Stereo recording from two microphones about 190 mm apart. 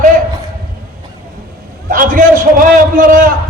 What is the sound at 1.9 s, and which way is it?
A man's voice, 45° right (ahead or behind).